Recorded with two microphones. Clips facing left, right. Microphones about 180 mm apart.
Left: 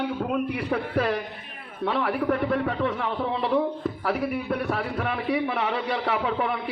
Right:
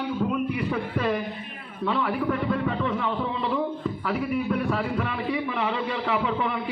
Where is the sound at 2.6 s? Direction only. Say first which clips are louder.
Even; 65° left (ahead or behind).